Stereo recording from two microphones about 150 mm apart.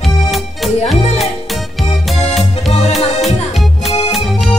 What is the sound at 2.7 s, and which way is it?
Music, 45° left (ahead or behind).